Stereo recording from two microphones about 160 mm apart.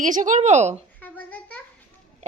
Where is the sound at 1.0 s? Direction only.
10° left (ahead or behind).